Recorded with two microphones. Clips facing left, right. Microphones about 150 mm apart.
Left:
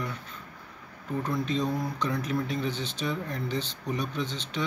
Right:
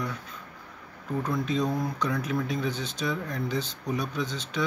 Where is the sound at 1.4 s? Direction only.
10° right (ahead or behind).